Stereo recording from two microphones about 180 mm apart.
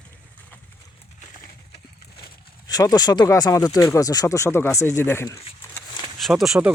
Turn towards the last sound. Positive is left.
turn(degrees=-5)  # may be behind; listen again after turning